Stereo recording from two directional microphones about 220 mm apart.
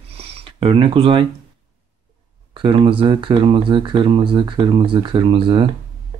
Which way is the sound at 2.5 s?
25° right (ahead or behind).